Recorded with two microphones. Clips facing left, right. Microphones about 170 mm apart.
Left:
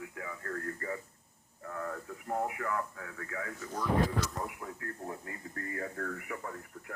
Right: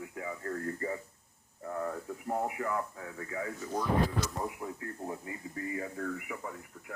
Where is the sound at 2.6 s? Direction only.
25° right (ahead or behind).